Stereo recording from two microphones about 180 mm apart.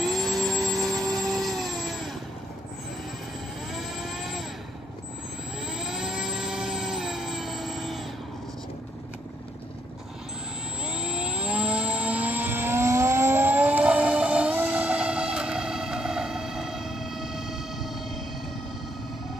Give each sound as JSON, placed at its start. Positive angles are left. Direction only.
{"t": 0.0, "sound": "vehicle", "side_deg": 0}
{"t": 3.7, "sound": "vehicle", "side_deg": 0}
{"t": 5.7, "sound": "vehicle", "side_deg": -5}
{"t": 10.8, "sound": "vehicle", "side_deg": -5}